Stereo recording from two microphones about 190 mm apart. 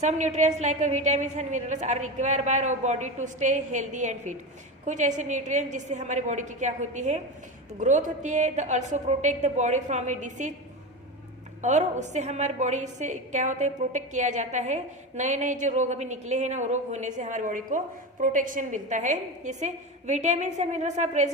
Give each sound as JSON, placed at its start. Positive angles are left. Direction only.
{"t": 0.0, "sound": "a woman's voice", "side_deg": -35}
{"t": 11.6, "sound": "a woman's voice", "side_deg": -40}